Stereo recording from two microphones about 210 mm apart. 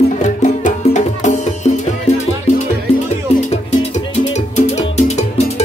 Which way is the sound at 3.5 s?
30° left (ahead or behind).